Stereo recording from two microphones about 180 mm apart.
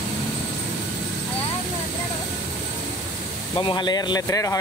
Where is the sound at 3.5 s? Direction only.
25° left (ahead or behind).